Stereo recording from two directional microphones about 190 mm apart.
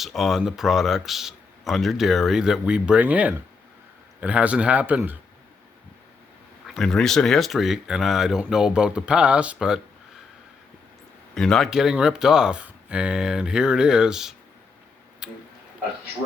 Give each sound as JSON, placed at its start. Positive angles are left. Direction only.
{"t": 0.0, "sound": "speech", "side_deg": 0}
{"t": 6.7, "sound": "speech", "side_deg": 5}
{"t": 11.3, "sound": "speech", "side_deg": 0}